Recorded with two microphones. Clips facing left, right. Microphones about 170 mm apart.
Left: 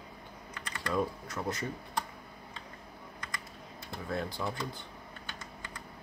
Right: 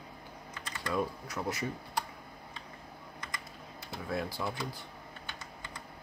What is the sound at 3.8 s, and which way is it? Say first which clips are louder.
Speech: even; 5° right (ahead or behind).